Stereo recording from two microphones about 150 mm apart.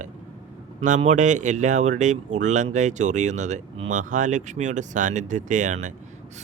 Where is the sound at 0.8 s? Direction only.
50° right (ahead or behind).